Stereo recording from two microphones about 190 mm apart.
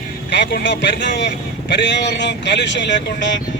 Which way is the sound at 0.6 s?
70° left (ahead or behind).